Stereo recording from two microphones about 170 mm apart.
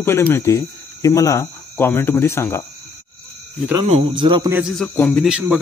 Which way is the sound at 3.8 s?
40° right (ahead or behind).